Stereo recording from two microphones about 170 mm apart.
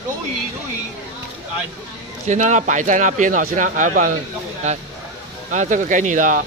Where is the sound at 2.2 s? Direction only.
45° right (ahead or behind).